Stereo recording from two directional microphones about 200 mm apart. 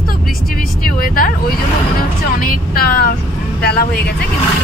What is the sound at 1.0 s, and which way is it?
Speech, 45° left (ahead or behind).